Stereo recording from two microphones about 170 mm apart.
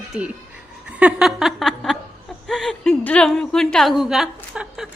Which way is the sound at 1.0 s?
5° right (ahead or behind).